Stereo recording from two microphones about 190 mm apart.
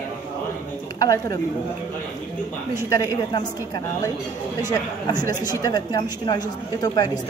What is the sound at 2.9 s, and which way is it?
Speech, 20° left (ahead or behind).